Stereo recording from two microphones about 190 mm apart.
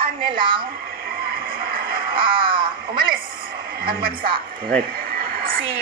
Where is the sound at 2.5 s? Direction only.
25° right (ahead or behind).